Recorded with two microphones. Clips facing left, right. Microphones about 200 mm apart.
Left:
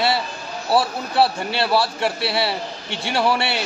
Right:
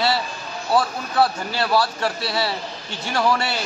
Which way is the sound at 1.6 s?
30° left (ahead or behind).